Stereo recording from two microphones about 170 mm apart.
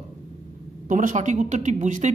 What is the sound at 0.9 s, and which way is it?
Speech, 50° right (ahead or behind).